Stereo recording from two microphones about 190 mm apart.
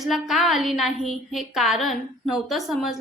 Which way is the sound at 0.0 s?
Centre (ahead or behind).